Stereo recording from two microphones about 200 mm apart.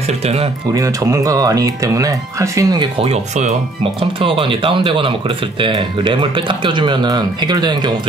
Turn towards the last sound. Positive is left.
turn(degrees=-20)  # may be behind; listen again after turning